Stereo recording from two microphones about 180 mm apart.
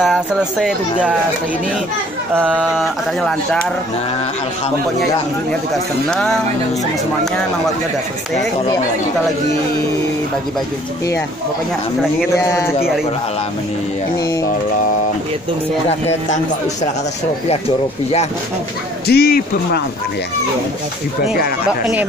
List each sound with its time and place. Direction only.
0.0 s speech: centre (ahead or behind)
2.3 s speech: 10° right (ahead or behind)
6.0 s speech: centre (ahead or behind)
12.4 s speech: 15° left (ahead or behind)
15.9 s speech: 35° left (ahead or behind)
19.0 s a man's voice: 60° left (ahead or behind)